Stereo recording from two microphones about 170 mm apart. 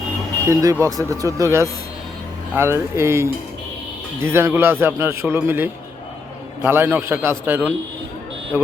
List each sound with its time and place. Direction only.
0.4 s a man's voice: 20° right (ahead or behind)